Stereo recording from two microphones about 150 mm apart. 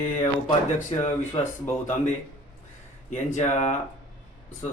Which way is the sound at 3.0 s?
55° left (ahead or behind).